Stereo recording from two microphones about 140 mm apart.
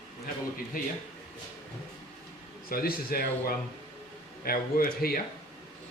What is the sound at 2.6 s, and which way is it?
Speech, 90° left.